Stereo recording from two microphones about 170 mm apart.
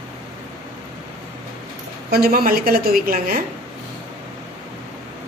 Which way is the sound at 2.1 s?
60° right (ahead or behind).